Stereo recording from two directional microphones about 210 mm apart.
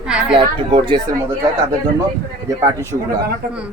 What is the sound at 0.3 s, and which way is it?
Speech, 25° right (ahead or behind).